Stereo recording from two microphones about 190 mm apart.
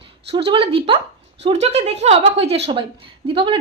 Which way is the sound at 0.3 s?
30° right (ahead or behind).